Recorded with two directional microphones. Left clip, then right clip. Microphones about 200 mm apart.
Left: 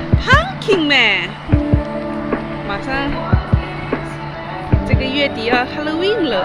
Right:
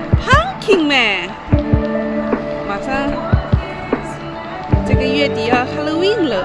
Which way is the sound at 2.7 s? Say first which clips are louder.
Even; 15° right (ahead or behind).